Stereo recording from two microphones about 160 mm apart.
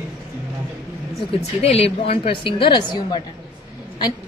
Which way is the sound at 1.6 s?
40° left (ahead or behind).